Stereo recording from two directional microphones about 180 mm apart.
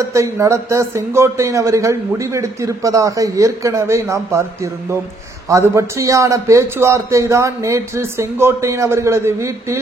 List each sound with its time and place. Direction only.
0.1 s speech: 15° right (ahead or behind)